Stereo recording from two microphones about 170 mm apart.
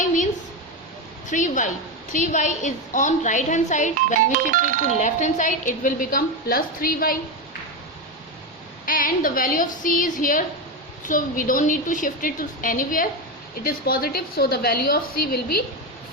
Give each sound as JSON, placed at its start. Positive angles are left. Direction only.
{"t": 0.0, "sound": "a sound", "side_deg": 50}
{"t": 1.3, "sound": "a woman's voice", "side_deg": 45}
{"t": 4.5, "sound": "speech", "side_deg": -55}
{"t": 4.9, "sound": "a woman's voice", "side_deg": 45}
{"t": 8.9, "sound": "a woman's voice", "side_deg": 55}